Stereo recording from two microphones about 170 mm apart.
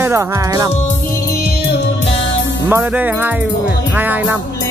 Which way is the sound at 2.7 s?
10° right (ahead or behind).